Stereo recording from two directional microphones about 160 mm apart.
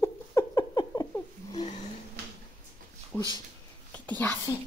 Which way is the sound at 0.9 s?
20° left (ahead or behind).